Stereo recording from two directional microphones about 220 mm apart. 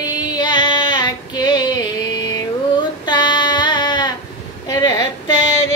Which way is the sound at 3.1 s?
20° left (ahead or behind).